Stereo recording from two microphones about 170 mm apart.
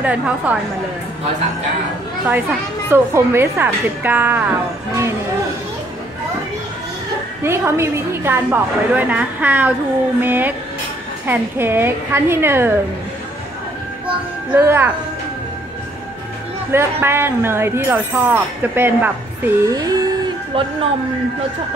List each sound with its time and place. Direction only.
0.0 s speech: 10° right (ahead or behind)
2.9 s speech: 15° right (ahead or behind)
7.4 s speech: 15° right (ahead or behind)
14.5 s speech: 15° right (ahead or behind)
16.7 s speech: 15° right (ahead or behind); by 20.7 s 30° right (ahead or behind)